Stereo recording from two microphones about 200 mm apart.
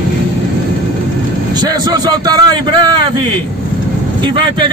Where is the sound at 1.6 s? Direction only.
20° right (ahead or behind).